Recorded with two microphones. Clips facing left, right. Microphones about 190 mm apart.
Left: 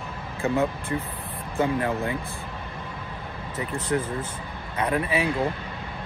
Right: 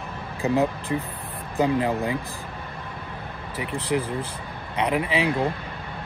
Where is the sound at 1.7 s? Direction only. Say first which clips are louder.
Right 2 dB; 15° right (ahead or behind).